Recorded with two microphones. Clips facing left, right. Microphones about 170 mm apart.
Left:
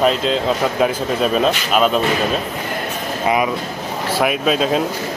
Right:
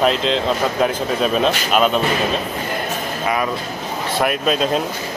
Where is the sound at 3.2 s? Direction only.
15° left (ahead or behind).